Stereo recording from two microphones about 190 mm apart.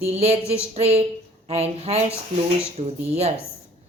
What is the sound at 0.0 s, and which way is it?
Speech, 35° right (ahead or behind).